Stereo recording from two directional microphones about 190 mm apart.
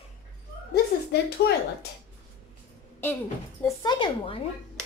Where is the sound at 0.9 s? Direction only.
60° left (ahead or behind).